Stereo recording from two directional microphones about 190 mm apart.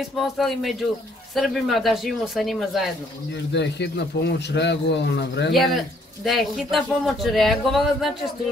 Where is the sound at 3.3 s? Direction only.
65° left (ahead or behind).